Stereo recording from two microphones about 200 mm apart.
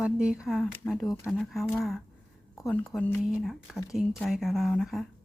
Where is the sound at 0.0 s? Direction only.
5° right (ahead or behind).